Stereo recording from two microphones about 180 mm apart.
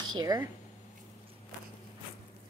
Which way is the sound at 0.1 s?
20° right (ahead or behind).